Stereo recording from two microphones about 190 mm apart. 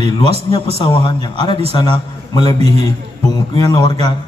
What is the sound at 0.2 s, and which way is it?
A woman's voice, 25° left (ahead or behind).